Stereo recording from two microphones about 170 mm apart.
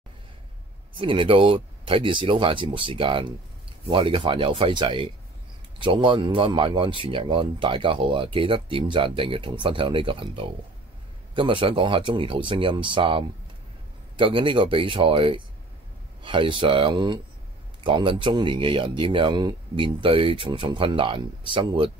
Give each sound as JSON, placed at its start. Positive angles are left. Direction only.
{"t": 0.9, "sound": "speech", "side_deg": -30}